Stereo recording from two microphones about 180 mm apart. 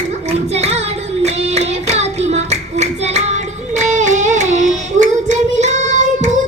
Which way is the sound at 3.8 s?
40° right (ahead or behind).